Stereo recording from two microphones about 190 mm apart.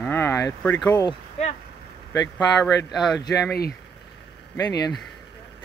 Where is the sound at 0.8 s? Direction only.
20° left (ahead or behind).